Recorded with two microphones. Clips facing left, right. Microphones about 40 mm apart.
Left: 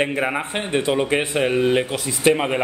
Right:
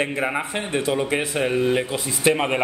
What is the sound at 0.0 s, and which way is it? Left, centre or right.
Speech, centre.